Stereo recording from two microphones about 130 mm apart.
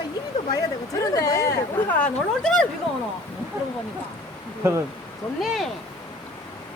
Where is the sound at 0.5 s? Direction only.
25° left (ahead or behind).